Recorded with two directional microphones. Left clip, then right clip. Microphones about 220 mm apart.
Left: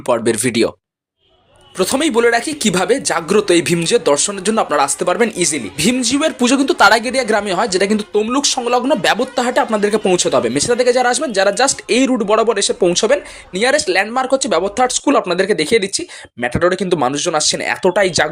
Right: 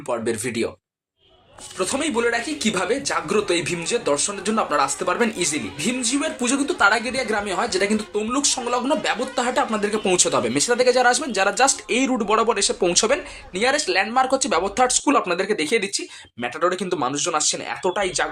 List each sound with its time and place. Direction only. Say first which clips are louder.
0.0 s speech: left 9 dB; 45° left (ahead or behind)
1.8 s speech: left 8 dB; 40° left (ahead or behind)
5.7 s speech: left 7 dB; 45° left (ahead or behind); by 18.3 s 25° left (ahead or behind)